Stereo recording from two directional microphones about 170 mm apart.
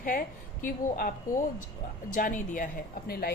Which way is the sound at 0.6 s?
55° left (ahead or behind).